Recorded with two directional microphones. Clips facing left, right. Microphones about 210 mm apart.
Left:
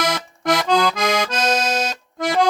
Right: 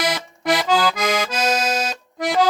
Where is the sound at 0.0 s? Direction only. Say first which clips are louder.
Left 1 dB; 5° right (ahead or behind).